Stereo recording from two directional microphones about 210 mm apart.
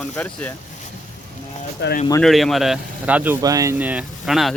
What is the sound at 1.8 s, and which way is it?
Speech, 55° left (ahead or behind).